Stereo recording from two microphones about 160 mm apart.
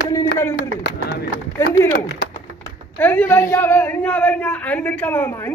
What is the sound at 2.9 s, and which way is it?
A man's voice, 10° left (ahead or behind).